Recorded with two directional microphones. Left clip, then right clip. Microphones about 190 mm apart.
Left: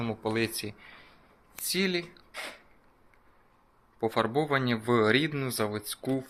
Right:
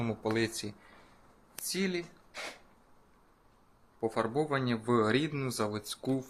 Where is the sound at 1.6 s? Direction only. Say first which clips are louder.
Left 5 dB; 30° left (ahead or behind).